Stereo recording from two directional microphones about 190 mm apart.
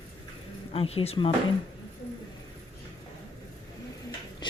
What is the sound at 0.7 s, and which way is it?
Speech, 30° left (ahead or behind).